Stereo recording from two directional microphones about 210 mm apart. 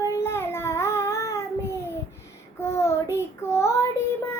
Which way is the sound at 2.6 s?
15° left (ahead or behind).